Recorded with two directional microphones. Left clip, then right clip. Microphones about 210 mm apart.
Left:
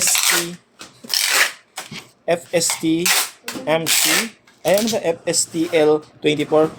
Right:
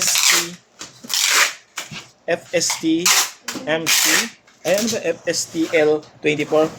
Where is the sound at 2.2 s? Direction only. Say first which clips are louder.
Left 1 dB; 25° left (ahead or behind).